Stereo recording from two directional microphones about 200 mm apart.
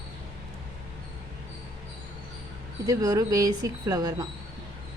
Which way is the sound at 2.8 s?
20° right (ahead or behind).